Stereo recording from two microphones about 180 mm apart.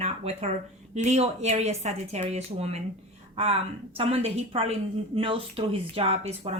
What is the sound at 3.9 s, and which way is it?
Speech, 35° right (ahead or behind).